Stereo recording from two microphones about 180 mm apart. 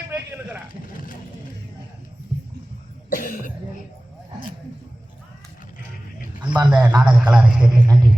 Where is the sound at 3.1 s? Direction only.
50° left (ahead or behind).